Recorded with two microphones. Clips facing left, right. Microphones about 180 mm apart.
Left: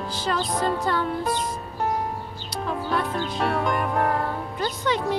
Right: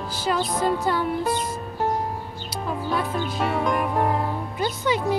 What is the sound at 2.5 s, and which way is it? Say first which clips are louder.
Speech: even; 5° right (ahead or behind).